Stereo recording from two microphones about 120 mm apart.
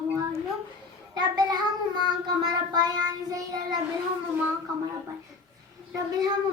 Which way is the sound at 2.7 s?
35° right (ahead or behind).